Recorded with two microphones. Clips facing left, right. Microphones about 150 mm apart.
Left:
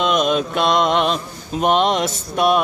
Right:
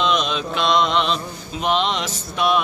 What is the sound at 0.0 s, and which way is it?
Mantra, 50° left (ahead or behind).